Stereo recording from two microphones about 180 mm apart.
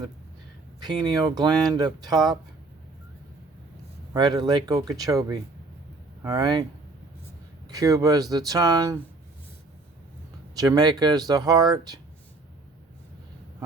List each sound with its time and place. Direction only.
0.8 s speech: 25° right (ahead or behind)
4.1 s speech: 20° right (ahead or behind)
7.7 s speech: 20° right (ahead or behind)
10.5 s speech: 20° right (ahead or behind)